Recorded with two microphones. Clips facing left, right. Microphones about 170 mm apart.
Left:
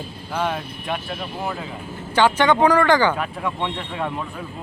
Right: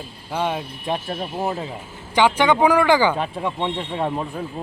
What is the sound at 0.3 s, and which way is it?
A man's voice, 20° right (ahead or behind).